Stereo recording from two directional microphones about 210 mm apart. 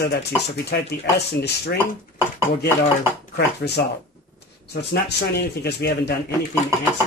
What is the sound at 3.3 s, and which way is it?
Speech, 50° left (ahead or behind).